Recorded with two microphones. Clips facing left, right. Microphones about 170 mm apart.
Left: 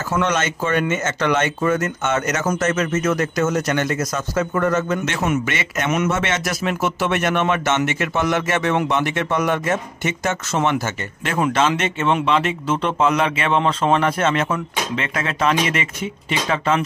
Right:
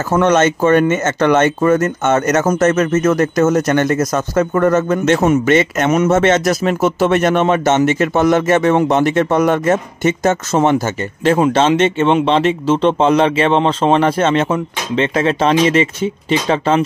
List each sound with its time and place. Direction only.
0.1 s speech: 45° right (ahead or behind)
11.2 s speech: 30° right (ahead or behind)